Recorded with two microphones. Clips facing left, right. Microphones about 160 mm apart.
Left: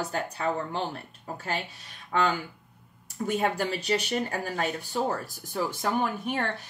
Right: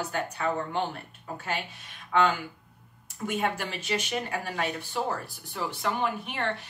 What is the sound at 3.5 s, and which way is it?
Speech, 40° left (ahead or behind).